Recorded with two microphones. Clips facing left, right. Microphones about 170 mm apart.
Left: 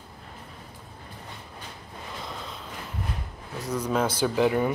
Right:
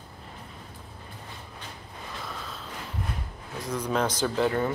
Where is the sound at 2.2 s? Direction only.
20° left (ahead or behind).